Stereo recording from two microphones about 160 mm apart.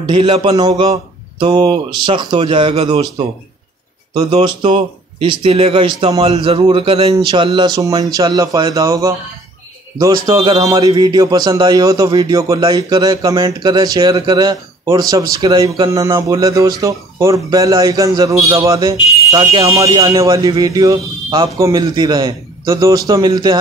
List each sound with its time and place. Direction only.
0.0 s speech: 35° right (ahead or behind)
4.1 s speech: 30° right (ahead or behind)